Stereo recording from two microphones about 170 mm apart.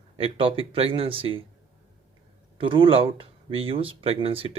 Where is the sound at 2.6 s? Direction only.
30° right (ahead or behind).